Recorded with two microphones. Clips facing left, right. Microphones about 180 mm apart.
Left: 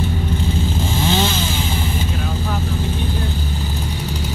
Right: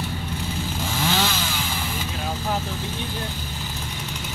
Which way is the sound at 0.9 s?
25° left (ahead or behind).